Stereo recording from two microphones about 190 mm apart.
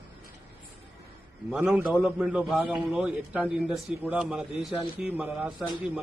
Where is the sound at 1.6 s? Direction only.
10° right (ahead or behind).